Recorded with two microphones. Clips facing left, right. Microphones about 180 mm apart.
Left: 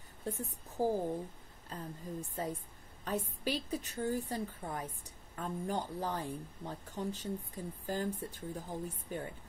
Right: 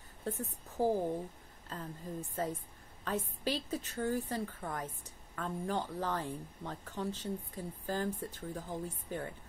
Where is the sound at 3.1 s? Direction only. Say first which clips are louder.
Even; 15° left (ahead or behind).